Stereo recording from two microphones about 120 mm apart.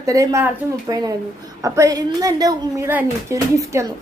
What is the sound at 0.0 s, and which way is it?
A woman's voice, 25° right (ahead or behind).